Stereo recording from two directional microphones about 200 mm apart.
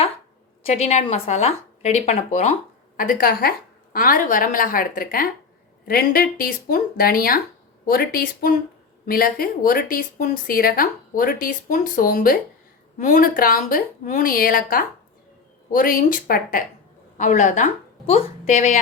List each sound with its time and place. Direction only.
0.6 s a woman's voice: 35° left (ahead or behind)
3.0 s a woman's voice: 45° left (ahead or behind)